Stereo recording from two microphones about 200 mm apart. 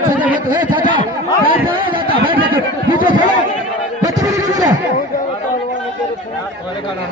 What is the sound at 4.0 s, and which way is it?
Music, 20° right (ahead or behind).